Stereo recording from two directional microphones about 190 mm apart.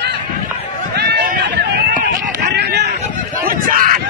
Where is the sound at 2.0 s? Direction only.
45° right (ahead or behind).